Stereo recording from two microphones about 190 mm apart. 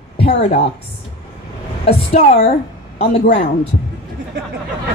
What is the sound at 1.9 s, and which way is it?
Speech, 30° left (ahead or behind).